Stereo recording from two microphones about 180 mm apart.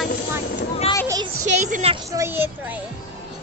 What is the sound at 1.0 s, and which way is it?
Speech, 20° right (ahead or behind).